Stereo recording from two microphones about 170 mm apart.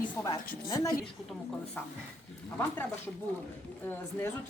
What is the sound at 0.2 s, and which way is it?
Speech, 15° left (ahead or behind).